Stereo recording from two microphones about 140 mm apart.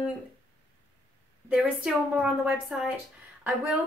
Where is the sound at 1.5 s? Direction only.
10° right (ahead or behind).